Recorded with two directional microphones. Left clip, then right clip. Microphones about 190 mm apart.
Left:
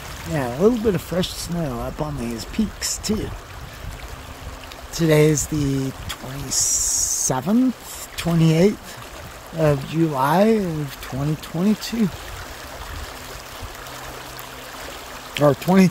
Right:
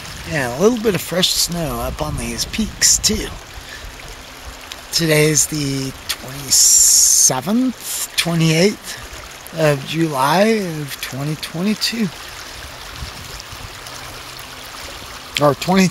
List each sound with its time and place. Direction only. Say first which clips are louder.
0.3 s speech: right 3 dB; centre (ahead or behind)
4.9 s speech: right 2 dB; 15° left (ahead or behind)
15.3 s speech: right 2 dB; 10° left (ahead or behind)